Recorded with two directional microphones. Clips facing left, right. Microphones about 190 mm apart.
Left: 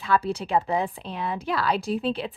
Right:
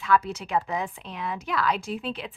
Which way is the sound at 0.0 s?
30° left (ahead or behind).